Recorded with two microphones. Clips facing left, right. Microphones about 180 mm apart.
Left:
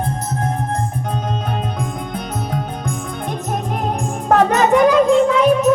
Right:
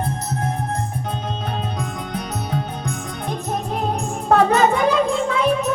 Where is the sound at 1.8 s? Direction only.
45° left (ahead or behind).